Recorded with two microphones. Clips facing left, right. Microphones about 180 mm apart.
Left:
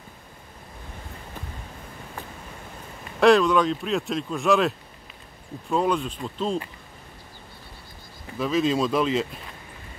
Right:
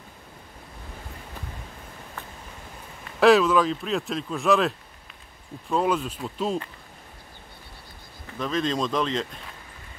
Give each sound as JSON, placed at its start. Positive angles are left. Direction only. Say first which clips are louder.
{"t": 3.2, "sound": "speech", "louder": "even", "side_deg": -5}
{"t": 8.4, "sound": "speech", "louder": "left 3 dB", "side_deg": 5}